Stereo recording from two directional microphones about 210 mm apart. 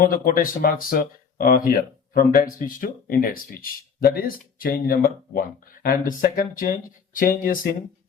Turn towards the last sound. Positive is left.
turn(degrees=40)  # may be behind; listen again after turning